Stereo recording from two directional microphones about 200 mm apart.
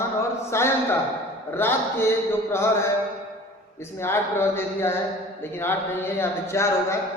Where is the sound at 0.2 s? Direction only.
15° left (ahead or behind).